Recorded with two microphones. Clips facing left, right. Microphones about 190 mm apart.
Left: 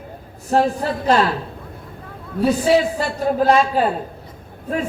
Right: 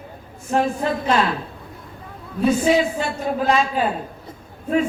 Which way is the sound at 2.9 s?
40° left (ahead or behind).